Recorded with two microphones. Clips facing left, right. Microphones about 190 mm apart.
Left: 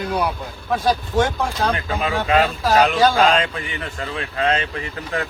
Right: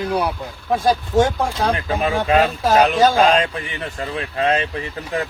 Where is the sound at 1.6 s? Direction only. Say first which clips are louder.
Right 2 dB; 25° right (ahead or behind).